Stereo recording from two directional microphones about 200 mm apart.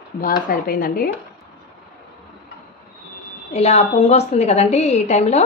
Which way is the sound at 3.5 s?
30° left (ahead or behind).